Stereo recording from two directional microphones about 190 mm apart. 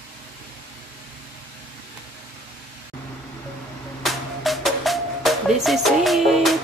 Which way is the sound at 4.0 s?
Centre (ahead or behind).